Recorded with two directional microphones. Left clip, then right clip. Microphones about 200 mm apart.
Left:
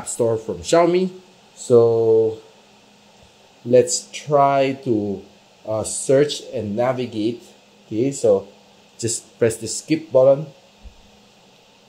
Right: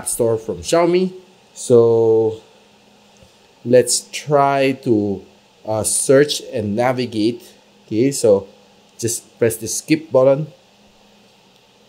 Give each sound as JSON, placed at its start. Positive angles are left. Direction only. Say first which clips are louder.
{"t": 0.0, "sound": "speech", "louder": "right 2 dB", "side_deg": -10}
{"t": 1.7, "sound": "speech", "louder": "right 2 dB", "side_deg": -30}
{"t": 3.7, "sound": "speech", "louder": "right 2 dB", "side_deg": -25}
{"t": 8.9, "sound": "speech", "louder": "right 2 dB", "side_deg": -10}
{"t": 9.8, "sound": "speech", "louder": "right 1 dB", "side_deg": -35}